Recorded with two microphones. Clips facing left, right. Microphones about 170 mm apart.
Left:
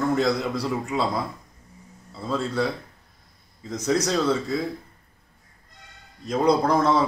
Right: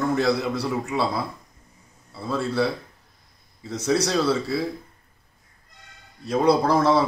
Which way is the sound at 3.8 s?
10° right (ahead or behind).